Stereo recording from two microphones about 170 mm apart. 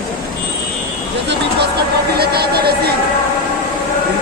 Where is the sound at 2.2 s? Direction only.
70° right (ahead or behind).